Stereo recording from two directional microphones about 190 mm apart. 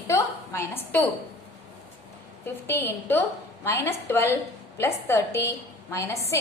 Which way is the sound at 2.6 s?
10° left (ahead or behind).